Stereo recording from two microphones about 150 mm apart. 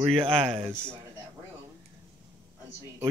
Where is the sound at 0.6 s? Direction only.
15° right (ahead or behind).